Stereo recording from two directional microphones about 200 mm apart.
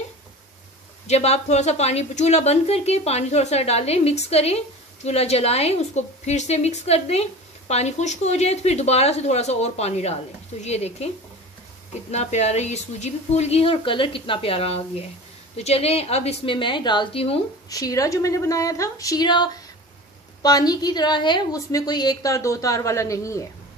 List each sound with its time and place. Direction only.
1.0 s a woman's voice: 30° left (ahead or behind)
12.1 s a woman's voice: 35° left (ahead or behind)
17.6 s a woman's voice: 15° left (ahead or behind)